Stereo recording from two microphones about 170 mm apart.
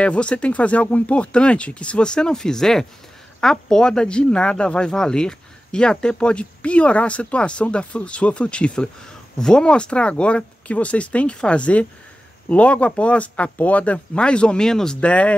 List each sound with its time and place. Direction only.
0.0 s speech: 5° left (ahead or behind)